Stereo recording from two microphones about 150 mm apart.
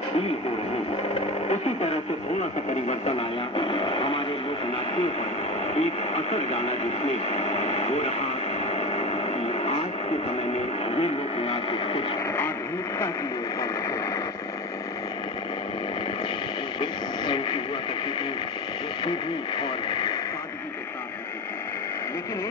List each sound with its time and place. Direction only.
1.5 s radio: 45° left (ahead or behind)
5.8 s radio: 45° left (ahead or behind)
10.9 s radio: 40° left (ahead or behind)
16.8 s radio: 30° left (ahead or behind)
19.0 s speech: 30° left (ahead or behind)